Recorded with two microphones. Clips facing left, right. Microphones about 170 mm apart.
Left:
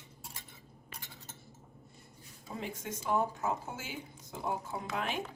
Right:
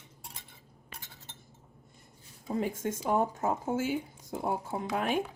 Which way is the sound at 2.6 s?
50° right (ahead or behind).